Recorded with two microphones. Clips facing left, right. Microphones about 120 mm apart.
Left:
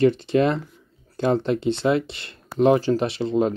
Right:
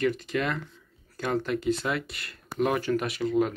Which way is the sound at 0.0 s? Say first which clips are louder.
Left 9 dB; 30° left (ahead or behind).